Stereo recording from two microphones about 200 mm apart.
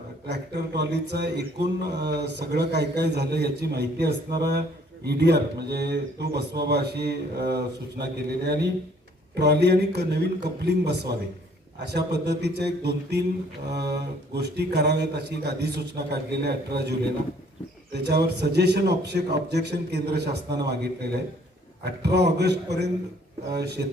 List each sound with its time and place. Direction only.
0.3 s speech: 60° right (ahead or behind)
17.9 s speech: 55° right (ahead or behind)